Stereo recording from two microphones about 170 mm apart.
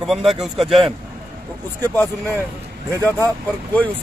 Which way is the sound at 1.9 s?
15° left (ahead or behind).